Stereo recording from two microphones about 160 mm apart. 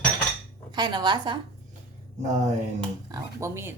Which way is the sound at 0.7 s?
25° right (ahead or behind).